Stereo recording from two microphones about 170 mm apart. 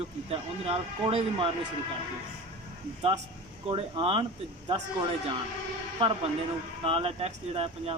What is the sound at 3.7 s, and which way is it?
Speech, 35° right (ahead or behind).